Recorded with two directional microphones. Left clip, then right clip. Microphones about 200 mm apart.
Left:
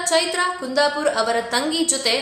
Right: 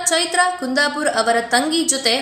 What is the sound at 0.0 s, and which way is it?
A woman's voice, 15° right (ahead or behind).